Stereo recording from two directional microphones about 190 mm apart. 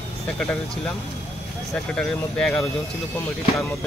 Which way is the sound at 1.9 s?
5° left (ahead or behind).